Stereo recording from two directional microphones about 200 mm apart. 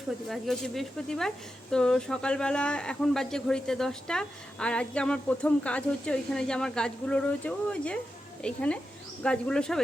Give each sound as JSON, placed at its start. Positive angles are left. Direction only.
{"t": 0.3, "sound": "speech", "side_deg": 0}